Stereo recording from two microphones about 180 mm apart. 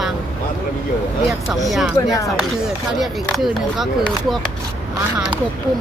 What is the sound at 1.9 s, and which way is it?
Speech, 15° left (ahead or behind).